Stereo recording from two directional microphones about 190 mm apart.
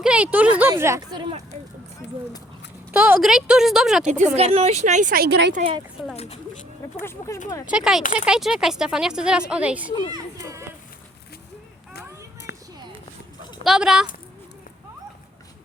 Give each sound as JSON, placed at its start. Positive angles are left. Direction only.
{"t": 0.0, "sound": "speech", "side_deg": -5}
{"t": 2.9, "sound": "speech", "side_deg": -10}
{"t": 4.0, "sound": "speech", "side_deg": -40}
{"t": 6.1, "sound": "speech", "side_deg": 35}
{"t": 7.0, "sound": "speech", "side_deg": 10}
{"t": 7.7, "sound": "speech", "side_deg": -5}
{"t": 10.1, "sound": "children playing", "side_deg": -20}
{"t": 12.5, "sound": "a sound", "side_deg": 60}
{"t": 13.7, "sound": "speech", "side_deg": -5}